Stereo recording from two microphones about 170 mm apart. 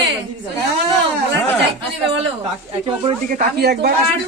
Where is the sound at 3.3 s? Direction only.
65° right (ahead or behind).